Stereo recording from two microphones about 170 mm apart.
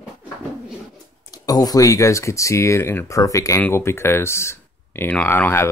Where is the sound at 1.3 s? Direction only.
20° left (ahead or behind).